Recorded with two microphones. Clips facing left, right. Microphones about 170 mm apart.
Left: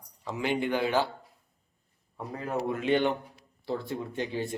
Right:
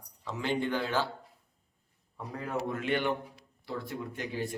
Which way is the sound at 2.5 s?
20° left (ahead or behind).